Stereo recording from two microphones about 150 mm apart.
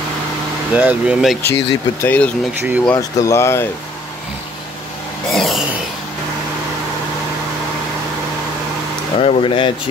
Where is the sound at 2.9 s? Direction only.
20° left (ahead or behind).